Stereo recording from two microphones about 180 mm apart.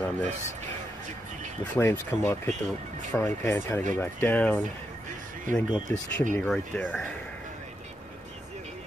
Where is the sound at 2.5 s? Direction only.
40° right (ahead or behind).